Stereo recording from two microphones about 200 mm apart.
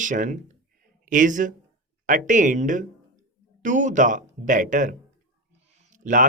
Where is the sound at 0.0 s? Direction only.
40° right (ahead or behind).